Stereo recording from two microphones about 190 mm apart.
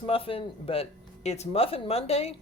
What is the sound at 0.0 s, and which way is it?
Speech, 30° left (ahead or behind).